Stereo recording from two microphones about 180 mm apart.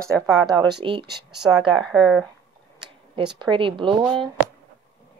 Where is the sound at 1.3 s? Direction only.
5° right (ahead or behind).